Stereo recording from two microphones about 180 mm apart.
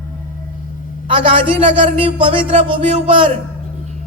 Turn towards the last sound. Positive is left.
turn(degrees=-30)  # may be behind; listen again after turning